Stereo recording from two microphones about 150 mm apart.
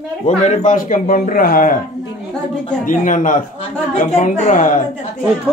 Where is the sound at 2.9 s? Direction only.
60° left (ahead or behind).